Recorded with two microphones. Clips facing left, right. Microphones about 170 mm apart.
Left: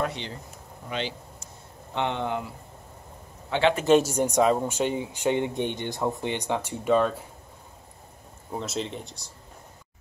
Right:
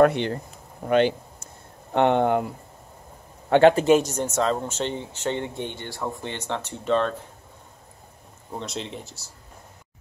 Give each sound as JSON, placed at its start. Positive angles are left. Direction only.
{"t": 0.0, "sound": "a man's voice", "side_deg": -60}
{"t": 4.0, "sound": "speech", "side_deg": 10}
{"t": 8.5, "sound": "speech", "side_deg": 0}